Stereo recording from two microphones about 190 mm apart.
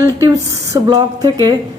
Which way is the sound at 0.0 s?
20° right (ahead or behind).